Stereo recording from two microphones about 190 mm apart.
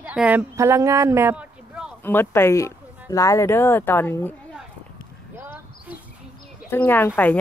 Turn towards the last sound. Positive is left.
turn(degrees=10)  # may be behind; listen again after turning